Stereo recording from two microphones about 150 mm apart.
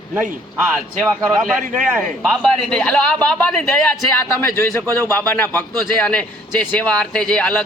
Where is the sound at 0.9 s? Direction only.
5° left (ahead or behind).